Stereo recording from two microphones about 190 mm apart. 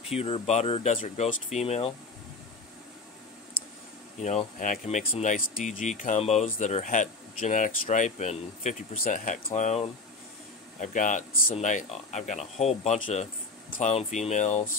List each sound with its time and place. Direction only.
0.1 s speech: 30° left (ahead or behind)
4.2 s speech: 35° left (ahead or behind)